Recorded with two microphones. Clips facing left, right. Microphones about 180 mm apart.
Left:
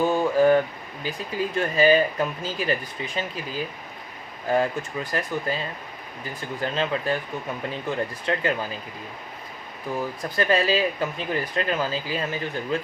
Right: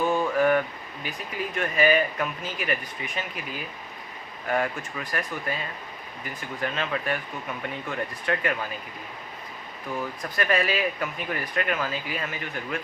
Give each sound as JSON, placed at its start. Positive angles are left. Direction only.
{"t": 0.3, "sound": "a sound", "side_deg": 30}
{"t": 1.0, "sound": "speech", "side_deg": 30}
{"t": 10.2, "sound": "speech", "side_deg": 30}